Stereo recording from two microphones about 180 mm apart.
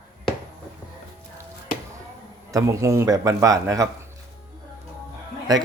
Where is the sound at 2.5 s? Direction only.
15° right (ahead or behind).